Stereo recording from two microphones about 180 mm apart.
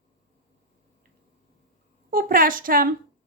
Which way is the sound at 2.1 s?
50° right (ahead or behind).